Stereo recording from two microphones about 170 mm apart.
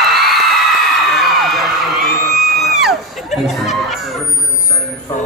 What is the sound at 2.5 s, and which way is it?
Music, centre (ahead or behind).